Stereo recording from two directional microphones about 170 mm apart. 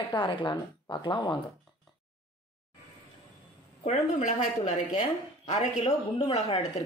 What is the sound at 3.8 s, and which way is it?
A woman's voice, 45° left (ahead or behind).